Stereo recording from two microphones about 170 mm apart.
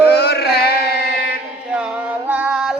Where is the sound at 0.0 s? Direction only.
75° left (ahead or behind).